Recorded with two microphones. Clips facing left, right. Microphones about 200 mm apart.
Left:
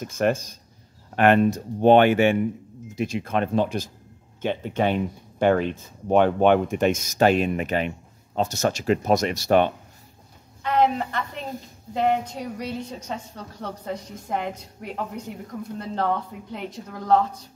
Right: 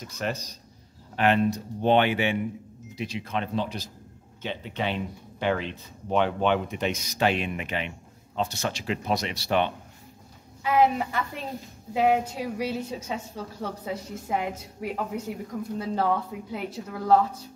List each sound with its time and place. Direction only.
0.0 s speech: 50° left (ahead or behind)
10.6 s a woman's voice: 5° right (ahead or behind)